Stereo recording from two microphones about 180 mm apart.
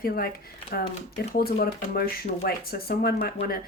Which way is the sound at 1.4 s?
55° left (ahead or behind).